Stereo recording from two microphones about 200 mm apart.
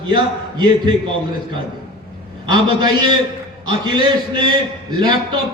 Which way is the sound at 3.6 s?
20° right (ahead or behind).